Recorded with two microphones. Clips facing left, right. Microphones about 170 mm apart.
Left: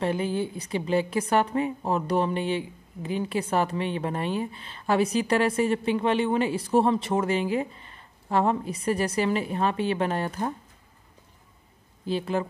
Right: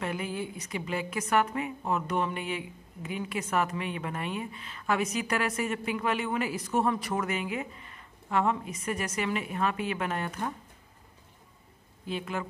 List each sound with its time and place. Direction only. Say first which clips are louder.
0.0 s a woman's voice: left 7 dB; 30° left (ahead or behind)
12.0 s speech: left 7 dB; 30° left (ahead or behind)